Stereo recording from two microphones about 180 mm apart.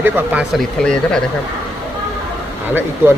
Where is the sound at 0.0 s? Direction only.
10° right (ahead or behind).